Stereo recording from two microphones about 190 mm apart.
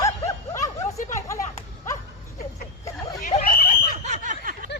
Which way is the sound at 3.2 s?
40° left (ahead or behind).